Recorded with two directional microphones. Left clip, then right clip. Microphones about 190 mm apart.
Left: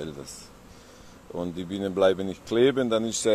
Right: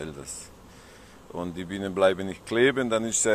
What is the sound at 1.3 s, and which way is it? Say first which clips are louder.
Speech: left 1 dB; 30° left (ahead or behind).